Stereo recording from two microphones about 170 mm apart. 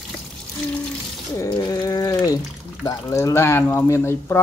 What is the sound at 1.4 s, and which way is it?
Speech, 20° left (ahead or behind).